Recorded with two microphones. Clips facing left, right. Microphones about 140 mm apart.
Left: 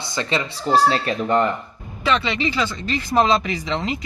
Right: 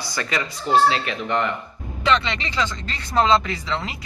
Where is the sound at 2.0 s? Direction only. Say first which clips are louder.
Left 1 dB; 5° left (ahead or behind).